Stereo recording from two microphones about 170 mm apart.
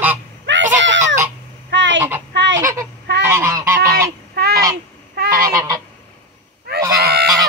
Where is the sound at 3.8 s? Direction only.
60° right (ahead or behind).